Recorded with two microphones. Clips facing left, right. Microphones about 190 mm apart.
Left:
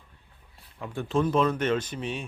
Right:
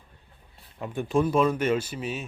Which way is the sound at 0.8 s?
15° right (ahead or behind).